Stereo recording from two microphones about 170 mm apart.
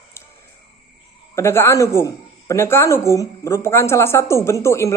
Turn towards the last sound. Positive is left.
turn(degrees=15)  # may be behind; listen again after turning